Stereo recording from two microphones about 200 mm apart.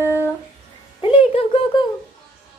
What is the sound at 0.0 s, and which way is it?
Music, 15° left (ahead or behind).